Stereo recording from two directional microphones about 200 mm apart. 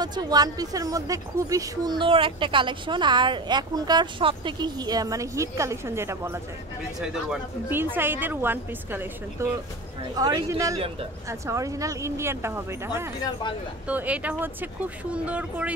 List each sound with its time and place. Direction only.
0.0 s speech: 20° right (ahead or behind)
7.0 s speech: 5° right (ahead or behind)
13.2 s speech: 20° left (ahead or behind)
13.8 s speech: 5° right (ahead or behind)